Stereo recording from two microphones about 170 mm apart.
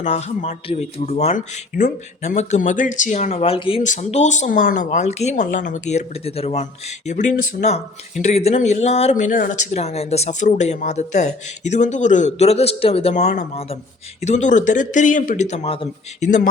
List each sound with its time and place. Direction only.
0.0 s speech: 40° left (ahead or behind)